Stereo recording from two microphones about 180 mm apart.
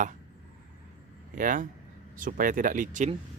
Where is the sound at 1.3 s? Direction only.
50° right (ahead or behind).